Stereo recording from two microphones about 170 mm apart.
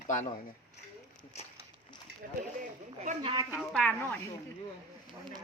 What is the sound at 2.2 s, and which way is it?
Speech, 60° right (ahead or behind).